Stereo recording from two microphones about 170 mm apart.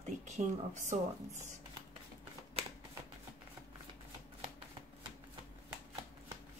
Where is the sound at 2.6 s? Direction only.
35° right (ahead or behind).